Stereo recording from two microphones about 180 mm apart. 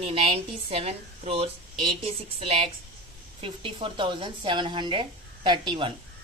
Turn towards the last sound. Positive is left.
turn(degrees=-25)  # may be behind; listen again after turning